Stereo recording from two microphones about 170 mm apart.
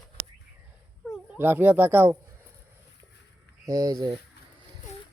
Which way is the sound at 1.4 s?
10° right (ahead or behind).